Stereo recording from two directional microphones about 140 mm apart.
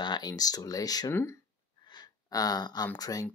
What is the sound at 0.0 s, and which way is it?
Speech, 30° left (ahead or behind).